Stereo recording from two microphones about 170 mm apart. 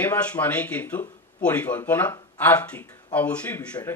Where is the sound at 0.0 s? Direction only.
10° left (ahead or behind).